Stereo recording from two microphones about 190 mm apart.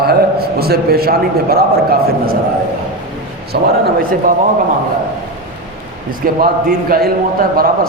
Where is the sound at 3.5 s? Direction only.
55° right (ahead or behind).